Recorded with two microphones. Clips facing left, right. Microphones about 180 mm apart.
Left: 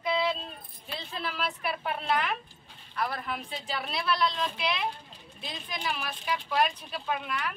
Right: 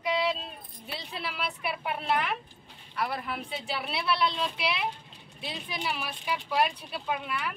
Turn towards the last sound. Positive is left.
turn(degrees=-5)  # may be behind; listen again after turning